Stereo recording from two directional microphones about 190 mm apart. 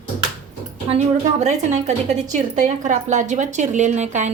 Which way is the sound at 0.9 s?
35° right (ahead or behind).